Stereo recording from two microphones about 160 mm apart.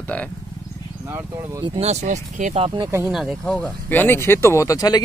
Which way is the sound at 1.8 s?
45° right (ahead or behind).